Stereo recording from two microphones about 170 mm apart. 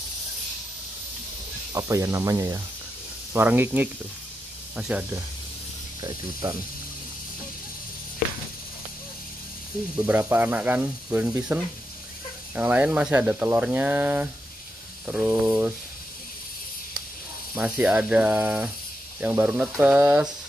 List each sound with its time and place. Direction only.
1.7 s speech: 20° right (ahead or behind)
9.9 s speech: 10° right (ahead or behind)
17.6 s speech: 5° right (ahead or behind)